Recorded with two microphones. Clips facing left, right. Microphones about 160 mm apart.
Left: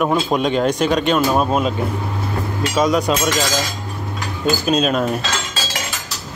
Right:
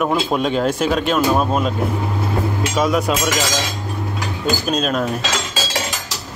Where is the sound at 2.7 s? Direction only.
5° right (ahead or behind).